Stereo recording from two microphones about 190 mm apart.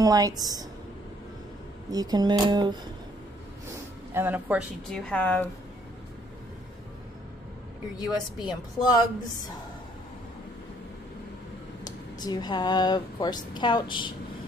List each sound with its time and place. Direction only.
0.0 s speech: 20° right (ahead or behind)
1.9 s speech: 20° right (ahead or behind)
4.1 s speech: 10° right (ahead or behind)
4.8 s a woman's voice: 5° left (ahead or behind)
8.0 s speech: 20° left (ahead or behind)
11.8 s speech: 20° left (ahead or behind)